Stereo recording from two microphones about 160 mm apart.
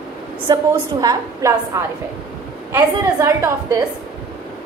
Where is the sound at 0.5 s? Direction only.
25° right (ahead or behind).